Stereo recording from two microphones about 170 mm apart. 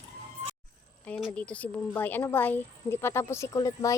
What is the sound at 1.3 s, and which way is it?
Speech, 5° left (ahead or behind).